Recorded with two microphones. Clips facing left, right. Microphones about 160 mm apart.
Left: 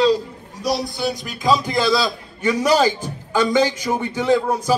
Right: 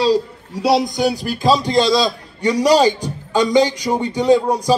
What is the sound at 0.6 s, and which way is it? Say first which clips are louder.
Speech: right 7 dB; 70° right (ahead or behind).